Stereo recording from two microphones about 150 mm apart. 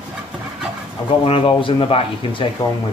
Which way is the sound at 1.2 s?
35° left (ahead or behind).